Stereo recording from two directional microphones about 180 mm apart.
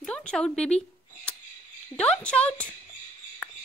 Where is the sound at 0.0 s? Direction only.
5° left (ahead or behind).